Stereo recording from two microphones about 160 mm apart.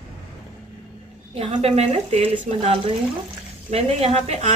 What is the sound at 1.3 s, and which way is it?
A woman's voice, 40° right (ahead or behind).